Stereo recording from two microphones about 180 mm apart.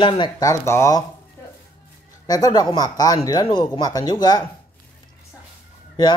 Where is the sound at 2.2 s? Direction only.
20° left (ahead or behind).